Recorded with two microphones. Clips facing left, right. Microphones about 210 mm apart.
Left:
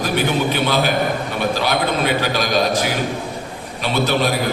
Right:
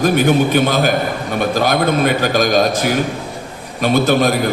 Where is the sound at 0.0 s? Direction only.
45° right (ahead or behind).